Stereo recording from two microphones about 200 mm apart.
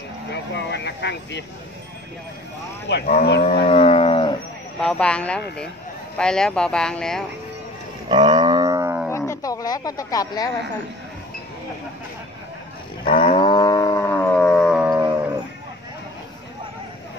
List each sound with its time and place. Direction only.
0.3 s speech: 60° left (ahead or behind)
2.9 s speech: 50° left (ahead or behind)
3.6 s a sound: 30° left (ahead or behind)
4.7 s speech: 5° left (ahead or behind)
8.1 s livestock: 20° right (ahead or behind)
9.1 s a sound: 15° left (ahead or behind)
13.2 s music: 25° left (ahead or behind); by 14.8 s 5° left (ahead or behind)
14.8 s livestock: 15° right (ahead or behind)